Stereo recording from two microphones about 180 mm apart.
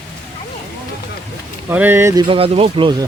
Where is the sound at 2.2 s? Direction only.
30° right (ahead or behind).